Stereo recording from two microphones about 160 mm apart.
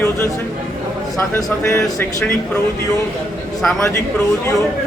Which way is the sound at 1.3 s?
15° left (ahead or behind).